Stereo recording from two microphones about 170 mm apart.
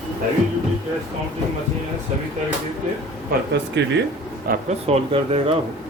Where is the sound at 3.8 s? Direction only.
90° right.